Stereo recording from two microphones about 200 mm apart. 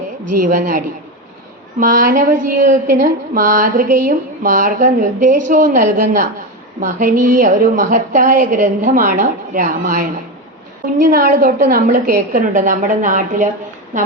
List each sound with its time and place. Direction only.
0.3 s a woman's voice: 40° right (ahead or behind)
11.1 s a woman's voice: 45° right (ahead or behind)